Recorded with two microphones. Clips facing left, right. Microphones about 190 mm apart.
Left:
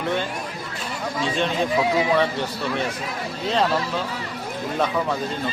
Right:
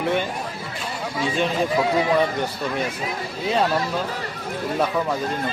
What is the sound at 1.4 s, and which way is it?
Speech, 5° right (ahead or behind).